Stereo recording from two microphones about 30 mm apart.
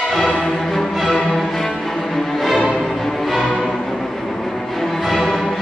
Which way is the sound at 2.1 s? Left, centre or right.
Centre.